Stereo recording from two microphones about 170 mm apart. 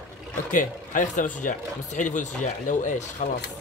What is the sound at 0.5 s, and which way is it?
Speech, 50° left (ahead or behind).